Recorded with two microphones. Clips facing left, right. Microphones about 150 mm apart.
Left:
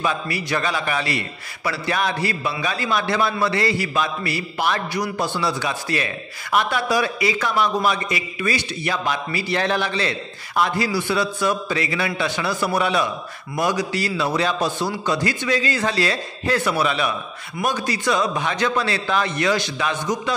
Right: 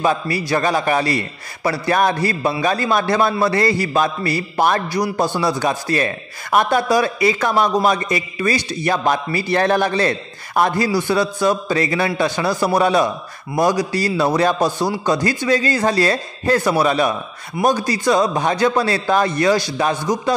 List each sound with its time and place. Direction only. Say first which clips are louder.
0.0 s a man's voice: right 5 dB; 35° right (ahead or behind)